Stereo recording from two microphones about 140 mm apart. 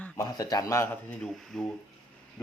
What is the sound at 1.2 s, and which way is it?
Speech, 5° left (ahead or behind).